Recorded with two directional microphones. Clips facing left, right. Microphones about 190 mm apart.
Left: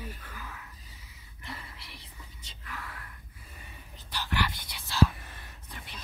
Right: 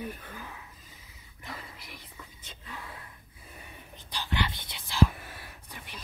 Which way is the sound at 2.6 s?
25° right (ahead or behind).